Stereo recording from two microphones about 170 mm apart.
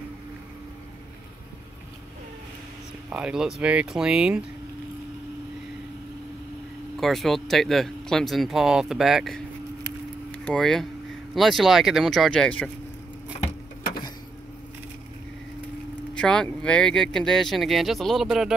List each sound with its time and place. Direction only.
3.1 s speech: 5° right (ahead or behind)
7.0 s speech: centre (ahead or behind)
16.2 s speech: 5° left (ahead or behind)